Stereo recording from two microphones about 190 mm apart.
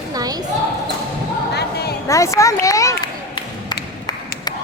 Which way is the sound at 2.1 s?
15° left (ahead or behind).